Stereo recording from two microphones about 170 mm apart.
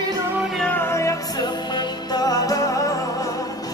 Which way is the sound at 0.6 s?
10° left (ahead or behind).